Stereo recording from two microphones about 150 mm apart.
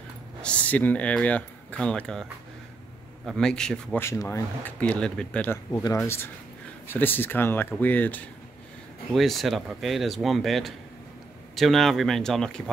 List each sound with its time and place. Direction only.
0.4 s speech: 10° left (ahead or behind)
3.3 s speech: 5° left (ahead or behind)
4.0 s speech: 20° left (ahead or behind)
5.7 s speech: 20° left (ahead or behind)
9.1 s speech: centre (ahead or behind)